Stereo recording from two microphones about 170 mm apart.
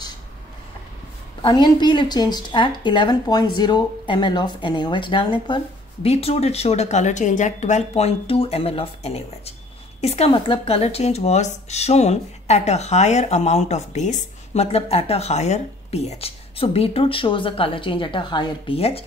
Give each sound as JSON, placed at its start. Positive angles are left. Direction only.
{"t": 1.4, "sound": "a woman's voice", "side_deg": 25}